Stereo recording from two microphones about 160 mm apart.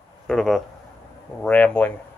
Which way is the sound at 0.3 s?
Centre (ahead or behind).